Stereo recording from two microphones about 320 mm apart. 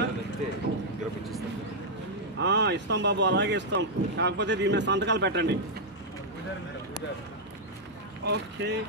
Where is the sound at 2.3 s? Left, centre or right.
Right.